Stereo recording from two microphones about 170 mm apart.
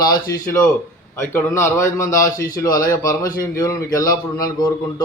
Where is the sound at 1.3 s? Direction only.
15° left (ahead or behind).